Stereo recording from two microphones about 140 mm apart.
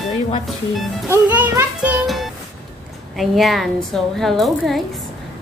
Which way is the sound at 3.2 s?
Centre (ahead or behind).